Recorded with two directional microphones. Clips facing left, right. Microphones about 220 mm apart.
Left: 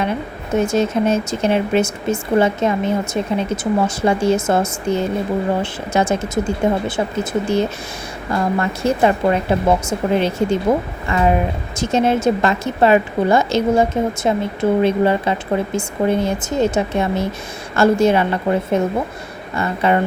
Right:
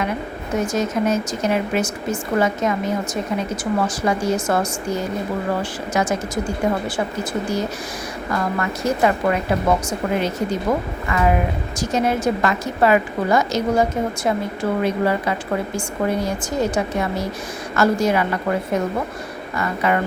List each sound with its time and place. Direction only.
0.5 s a woman's voice: 25° left (ahead or behind)